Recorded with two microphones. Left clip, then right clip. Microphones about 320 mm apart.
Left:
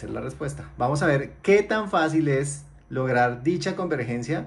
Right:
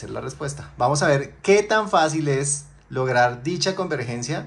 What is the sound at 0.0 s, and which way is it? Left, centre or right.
Speech, centre.